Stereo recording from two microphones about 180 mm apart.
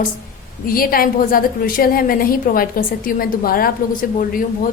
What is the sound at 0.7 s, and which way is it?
A woman's voice, 55° left (ahead or behind).